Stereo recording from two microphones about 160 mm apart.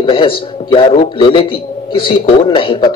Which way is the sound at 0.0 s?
35° left (ahead or behind).